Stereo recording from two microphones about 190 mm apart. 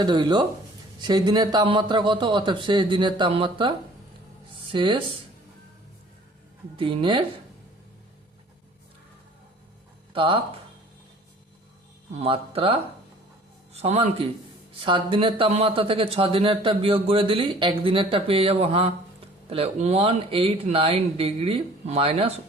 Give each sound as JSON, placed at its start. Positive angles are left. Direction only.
{"t": 0.0, "sound": "speech", "side_deg": -25}
{"t": 6.7, "sound": "speech", "side_deg": -25}
{"t": 10.1, "sound": "speech", "side_deg": -25}
{"t": 12.2, "sound": "speech", "side_deg": -30}
{"t": 13.7, "sound": "speech", "side_deg": -35}